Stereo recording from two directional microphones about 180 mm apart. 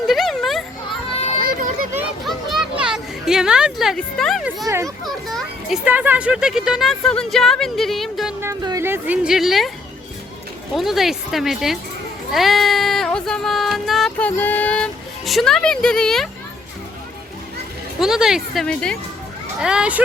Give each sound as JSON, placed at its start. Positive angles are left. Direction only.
{"t": 0.1, "sound": "children playing", "side_deg": 0}
{"t": 0.9, "sound": "children playing", "side_deg": 35}
{"t": 2.2, "sound": "children playing", "side_deg": 0}
{"t": 4.4, "sound": "speech", "side_deg": -10}
{"t": 5.0, "sound": "a child's voice", "side_deg": 0}
{"t": 8.4, "sound": "speech", "side_deg": -15}
{"t": 10.8, "sound": "a child's voice", "side_deg": 0}
{"t": 12.3, "sound": "music", "side_deg": 0}
{"t": 15.3, "sound": "a child's voice", "side_deg": 0}
{"t": 18.0, "sound": "a child's voice", "side_deg": 0}